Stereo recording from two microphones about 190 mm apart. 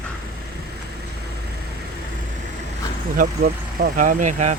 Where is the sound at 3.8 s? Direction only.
45° right (ahead or behind).